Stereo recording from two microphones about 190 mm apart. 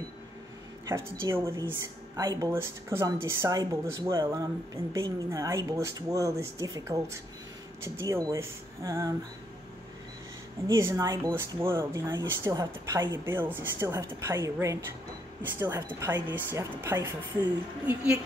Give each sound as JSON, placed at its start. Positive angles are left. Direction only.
{"t": 0.8, "sound": "speech", "side_deg": -15}
{"t": 10.7, "sound": "speech", "side_deg": -15}